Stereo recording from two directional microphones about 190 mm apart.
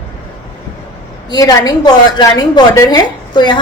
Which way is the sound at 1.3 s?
20° left (ahead or behind).